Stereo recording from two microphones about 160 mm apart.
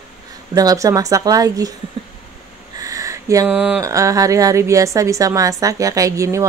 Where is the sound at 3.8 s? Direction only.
20° right (ahead or behind).